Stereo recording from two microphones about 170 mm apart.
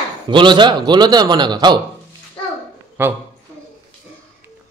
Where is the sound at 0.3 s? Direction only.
30° right (ahead or behind).